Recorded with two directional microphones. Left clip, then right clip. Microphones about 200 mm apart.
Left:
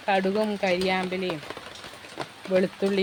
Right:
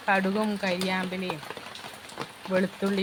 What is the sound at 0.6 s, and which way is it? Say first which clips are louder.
Speech: left 4 dB; 15° left (ahead or behind).